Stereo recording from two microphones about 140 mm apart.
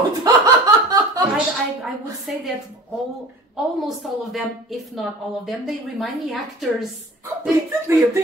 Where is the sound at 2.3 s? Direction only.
Centre (ahead or behind).